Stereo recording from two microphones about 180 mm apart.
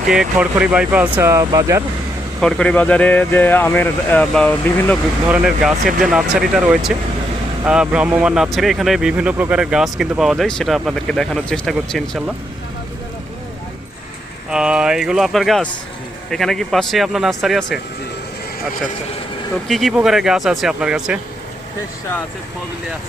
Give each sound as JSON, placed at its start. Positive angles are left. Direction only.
{"t": 0.1, "sound": "speech", "side_deg": -5}
{"t": 2.4, "sound": "speech", "side_deg": 5}
{"t": 14.5, "sound": "speech", "side_deg": -5}
{"t": 19.6, "sound": "speech", "side_deg": 0}